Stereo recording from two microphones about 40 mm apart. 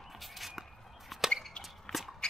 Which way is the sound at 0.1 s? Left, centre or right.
Centre.